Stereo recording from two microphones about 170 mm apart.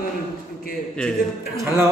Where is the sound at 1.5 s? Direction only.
15° right (ahead or behind).